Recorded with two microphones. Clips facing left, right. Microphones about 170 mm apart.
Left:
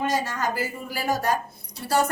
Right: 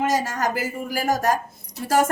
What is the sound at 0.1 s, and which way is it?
A woman's voice, 45° right (ahead or behind).